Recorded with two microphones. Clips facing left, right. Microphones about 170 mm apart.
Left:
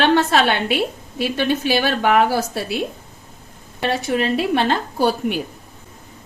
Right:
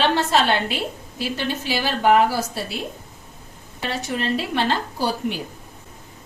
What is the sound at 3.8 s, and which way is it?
A woman's voice, 60° left (ahead or behind).